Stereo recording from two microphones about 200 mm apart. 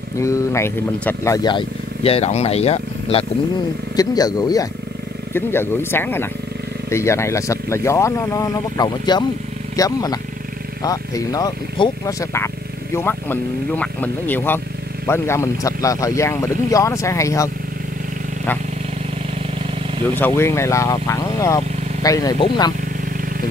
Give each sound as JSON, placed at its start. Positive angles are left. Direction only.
{"t": 0.2, "sound": "speech", "side_deg": 15}
{"t": 3.9, "sound": "speech", "side_deg": 20}
{"t": 20.2, "sound": "speech", "side_deg": 10}